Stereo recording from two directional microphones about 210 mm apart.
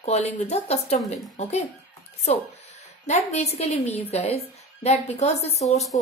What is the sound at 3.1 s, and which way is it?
Speech, 30° left (ahead or behind).